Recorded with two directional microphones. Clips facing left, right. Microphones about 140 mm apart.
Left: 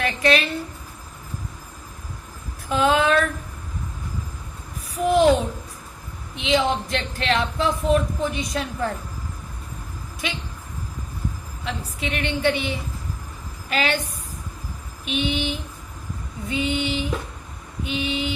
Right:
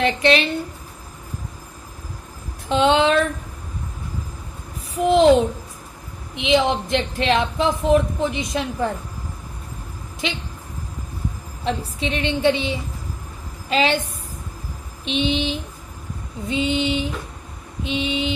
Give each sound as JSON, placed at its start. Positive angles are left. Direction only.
{"t": 0.0, "sound": "speech", "side_deg": -25}
{"t": 2.6, "sound": "speech", "side_deg": -25}
{"t": 5.0, "sound": "speech", "side_deg": -25}
{"t": 6.3, "sound": "speech", "side_deg": -20}
{"t": 11.6, "sound": "speech", "side_deg": -25}
{"t": 15.0, "sound": "speech", "side_deg": -25}